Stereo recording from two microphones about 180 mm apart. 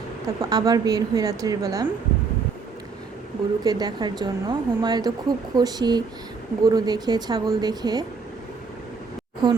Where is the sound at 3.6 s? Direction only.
20° right (ahead or behind).